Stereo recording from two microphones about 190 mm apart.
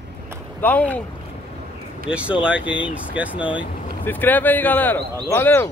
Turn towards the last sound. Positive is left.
turn(degrees=10)  # may be behind; listen again after turning